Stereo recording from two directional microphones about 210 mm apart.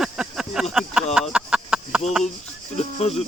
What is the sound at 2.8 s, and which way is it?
Music, 30° left (ahead or behind).